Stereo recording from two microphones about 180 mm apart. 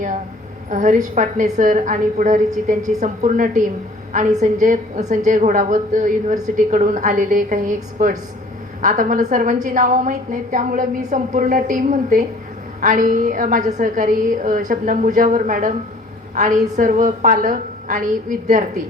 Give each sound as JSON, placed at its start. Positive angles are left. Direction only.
{"t": 0.7, "sound": "a woman's voice", "side_deg": -45}